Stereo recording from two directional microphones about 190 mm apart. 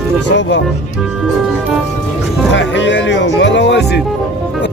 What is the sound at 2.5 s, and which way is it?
Speech, 70° left (ahead or behind).